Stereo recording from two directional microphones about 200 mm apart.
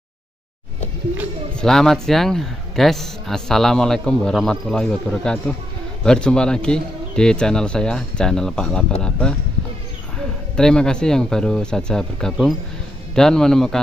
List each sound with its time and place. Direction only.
1.5 s a man's voice: 5° left (ahead or behind)
10.1 s a man's voice: 5° left (ahead or behind)